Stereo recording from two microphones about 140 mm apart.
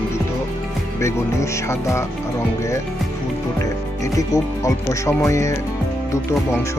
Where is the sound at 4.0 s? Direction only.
25° left (ahead or behind).